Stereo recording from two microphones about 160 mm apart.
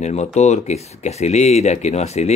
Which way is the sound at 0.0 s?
45° left (ahead or behind).